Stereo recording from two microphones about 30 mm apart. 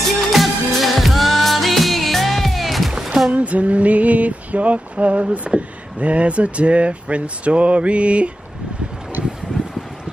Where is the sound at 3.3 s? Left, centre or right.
Right.